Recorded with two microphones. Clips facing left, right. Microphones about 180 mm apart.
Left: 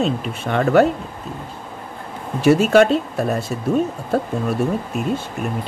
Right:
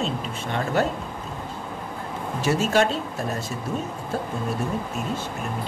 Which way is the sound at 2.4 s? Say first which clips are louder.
Left 8 dB; 60° left (ahead or behind).